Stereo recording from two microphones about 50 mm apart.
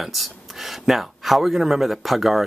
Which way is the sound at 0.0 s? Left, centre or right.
Centre.